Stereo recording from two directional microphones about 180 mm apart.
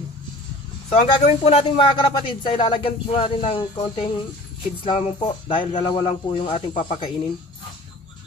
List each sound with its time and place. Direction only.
0.8 s speech: 35° left (ahead or behind)